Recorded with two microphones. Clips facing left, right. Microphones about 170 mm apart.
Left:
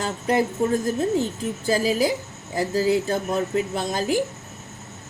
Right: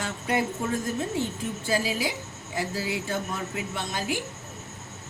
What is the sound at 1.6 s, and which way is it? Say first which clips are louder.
Speech: left 7 dB; 40° left (ahead or behind).